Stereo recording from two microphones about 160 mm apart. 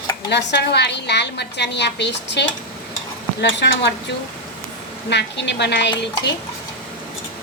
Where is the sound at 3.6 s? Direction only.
90° left.